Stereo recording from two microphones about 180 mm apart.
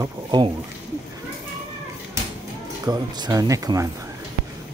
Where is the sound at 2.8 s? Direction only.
20° right (ahead or behind).